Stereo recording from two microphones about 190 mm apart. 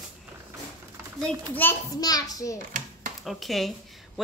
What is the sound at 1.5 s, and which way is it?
A child's voice, 15° left (ahead or behind).